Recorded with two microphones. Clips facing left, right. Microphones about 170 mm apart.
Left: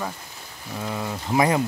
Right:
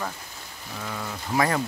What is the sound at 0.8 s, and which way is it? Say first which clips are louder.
Speech: left 5 dB; 20° left (ahead or behind).